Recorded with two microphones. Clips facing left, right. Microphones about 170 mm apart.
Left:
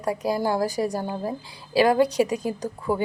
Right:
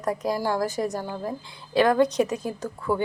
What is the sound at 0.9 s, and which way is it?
Speech, 30° left (ahead or behind).